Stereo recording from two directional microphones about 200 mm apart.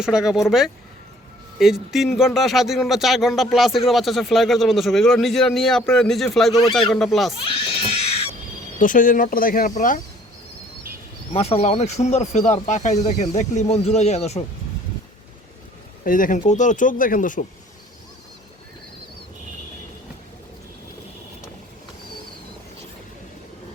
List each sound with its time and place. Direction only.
0.0 s speech: 5° right (ahead or behind)
1.5 s speech: centre (ahead or behind)
7.3 s a sound: 25° left (ahead or behind)
8.8 s speech: 40° left (ahead or behind)
11.3 s speech: 30° left (ahead or behind)
16.0 s speech: 40° left (ahead or behind)